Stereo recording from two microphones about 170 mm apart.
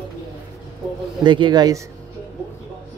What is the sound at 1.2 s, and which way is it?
Speech, 25° right (ahead or behind).